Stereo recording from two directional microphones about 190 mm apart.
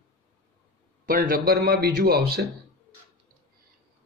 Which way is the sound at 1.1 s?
45° right (ahead or behind).